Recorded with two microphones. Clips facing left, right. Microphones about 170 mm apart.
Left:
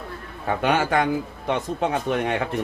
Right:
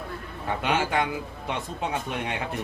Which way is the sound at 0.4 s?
50° left (ahead or behind).